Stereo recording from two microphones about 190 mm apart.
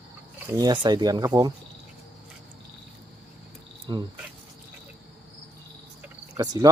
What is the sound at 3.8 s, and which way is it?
Cricket, 25° right (ahead or behind).